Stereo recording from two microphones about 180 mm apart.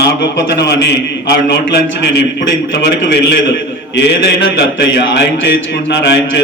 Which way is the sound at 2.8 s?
65° left (ahead or behind).